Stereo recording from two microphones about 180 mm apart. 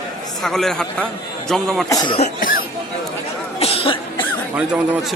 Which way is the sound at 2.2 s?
50° left (ahead or behind).